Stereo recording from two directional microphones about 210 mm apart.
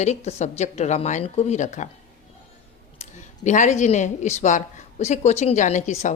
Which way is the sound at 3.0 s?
35° left (ahead or behind).